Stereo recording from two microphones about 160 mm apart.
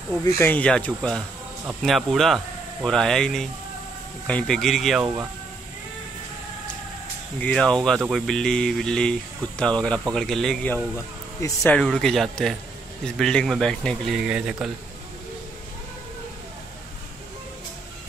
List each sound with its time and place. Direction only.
0.2 s speech: 15° left (ahead or behind)
5.0 s speech: 10° right (ahead or behind)
7.3 s speech: 5° left (ahead or behind)
11.4 s speech: 20° left (ahead or behind)
11.7 s speech: 5° left (ahead or behind)